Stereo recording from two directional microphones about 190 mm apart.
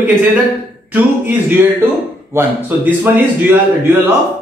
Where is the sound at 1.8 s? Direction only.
10° right (ahead or behind).